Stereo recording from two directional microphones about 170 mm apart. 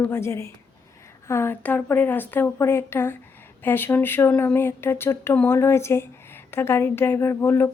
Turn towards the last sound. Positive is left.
turn(degrees=15)  # may be behind; listen again after turning